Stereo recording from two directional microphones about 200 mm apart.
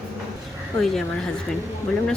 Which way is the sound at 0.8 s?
Centre (ahead or behind).